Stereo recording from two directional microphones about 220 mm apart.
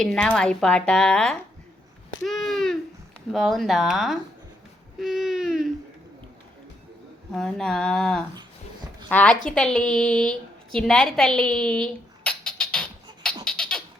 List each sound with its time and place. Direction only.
0.0 s speech: 5° left (ahead or behind)
2.2 s a sound: centre (ahead or behind)
3.3 s speech: centre (ahead or behind)
7.3 s speech: 5° left (ahead or behind)
8.4 s a sound: 20° right (ahead or behind)
9.0 s a woman's voice: 5° left (ahead or behind)
13.4 s cat: 5° left (ahead or behind)